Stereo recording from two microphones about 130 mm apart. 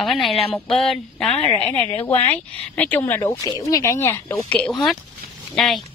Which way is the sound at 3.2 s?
25° left (ahead or behind).